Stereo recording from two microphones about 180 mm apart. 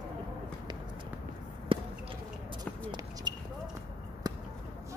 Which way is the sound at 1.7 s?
30° right (ahead or behind).